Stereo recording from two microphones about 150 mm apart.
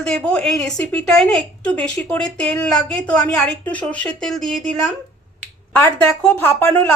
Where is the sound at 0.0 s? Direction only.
5° left (ahead or behind).